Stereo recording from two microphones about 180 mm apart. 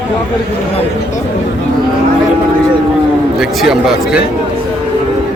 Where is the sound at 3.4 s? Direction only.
5° right (ahead or behind).